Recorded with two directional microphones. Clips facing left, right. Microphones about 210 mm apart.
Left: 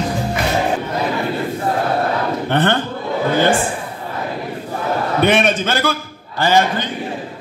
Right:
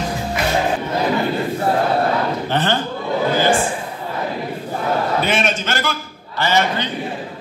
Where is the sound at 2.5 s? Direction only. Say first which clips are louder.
Left 5 dB; 60° left (ahead or behind).